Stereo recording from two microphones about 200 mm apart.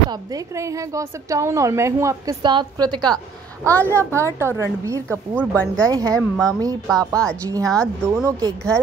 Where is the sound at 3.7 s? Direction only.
10° left (ahead or behind).